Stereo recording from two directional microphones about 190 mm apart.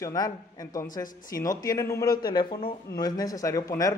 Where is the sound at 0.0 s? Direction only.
20° left (ahead or behind).